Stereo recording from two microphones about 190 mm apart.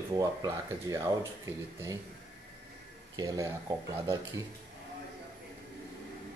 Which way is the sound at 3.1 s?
20° right (ahead or behind).